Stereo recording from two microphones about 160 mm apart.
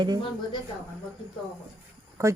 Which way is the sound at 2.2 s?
20° right (ahead or behind).